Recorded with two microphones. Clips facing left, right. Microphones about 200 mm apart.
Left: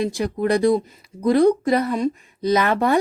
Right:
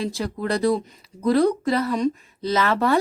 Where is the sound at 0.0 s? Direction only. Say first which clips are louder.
Left 5 dB; 15° left (ahead or behind).